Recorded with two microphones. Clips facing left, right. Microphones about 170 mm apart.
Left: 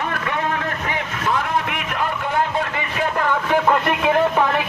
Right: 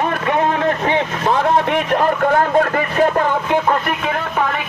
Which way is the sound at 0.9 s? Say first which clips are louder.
Right 6 dB; 30° right (ahead or behind).